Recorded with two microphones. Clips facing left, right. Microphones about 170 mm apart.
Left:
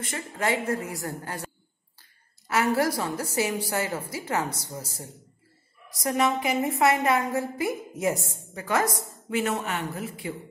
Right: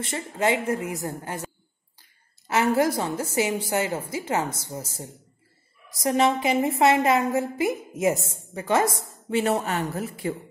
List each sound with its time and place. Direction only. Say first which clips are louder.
0.0 s a woman's voice: right 4 dB; 25° right (ahead or behind); by 10.3 s 40° right (ahead or behind)